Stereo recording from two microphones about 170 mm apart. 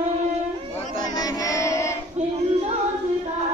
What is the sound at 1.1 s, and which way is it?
Carnatic music, 20° left (ahead or behind).